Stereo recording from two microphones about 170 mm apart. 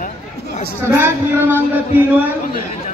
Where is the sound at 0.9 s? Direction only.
15° right (ahead or behind).